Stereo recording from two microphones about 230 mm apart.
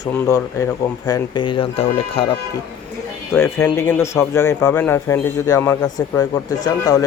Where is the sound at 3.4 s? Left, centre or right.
Centre.